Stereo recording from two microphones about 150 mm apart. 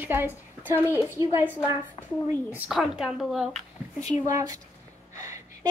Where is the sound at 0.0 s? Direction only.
15° right (ahead or behind).